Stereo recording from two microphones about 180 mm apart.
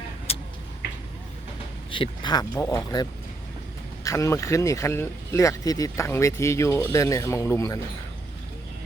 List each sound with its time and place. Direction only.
0.3 s vehicle: 35° left (ahead or behind)
1.9 s speech: 25° left (ahead or behind)